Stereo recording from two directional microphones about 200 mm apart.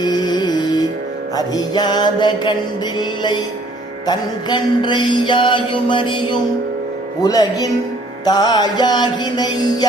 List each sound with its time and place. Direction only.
0.0 s music: 20° left (ahead or behind)
1.4 s mantra: 20° left (ahead or behind)
4.0 s mantra: 20° left (ahead or behind)
7.2 s speech: 20° left (ahead or behind)
8.2 s mantra: 20° left (ahead or behind)